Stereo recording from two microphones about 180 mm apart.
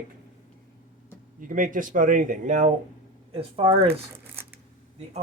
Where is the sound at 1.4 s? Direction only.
50° right (ahead or behind).